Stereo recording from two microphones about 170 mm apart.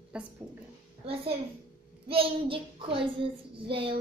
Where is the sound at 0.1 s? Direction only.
5° right (ahead or behind).